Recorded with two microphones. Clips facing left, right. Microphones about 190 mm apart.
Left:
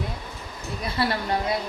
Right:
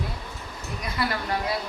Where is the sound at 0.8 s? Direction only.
30° left (ahead or behind).